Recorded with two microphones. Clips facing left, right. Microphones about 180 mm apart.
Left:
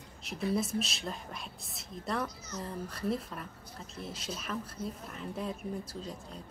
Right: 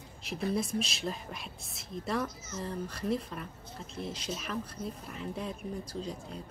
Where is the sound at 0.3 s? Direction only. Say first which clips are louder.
Even; centre (ahead or behind).